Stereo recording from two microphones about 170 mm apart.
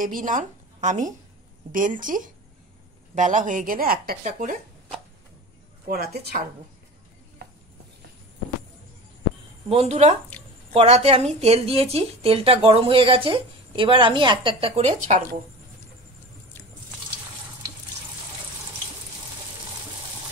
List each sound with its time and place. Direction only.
0.0 s a woman's voice: 50° right (ahead or behind)
5.9 s a woman's voice: 65° right (ahead or behind)
9.7 s a woman's voice: 35° right (ahead or behind)